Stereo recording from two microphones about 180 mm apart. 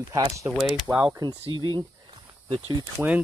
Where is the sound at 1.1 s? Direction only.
20° right (ahead or behind).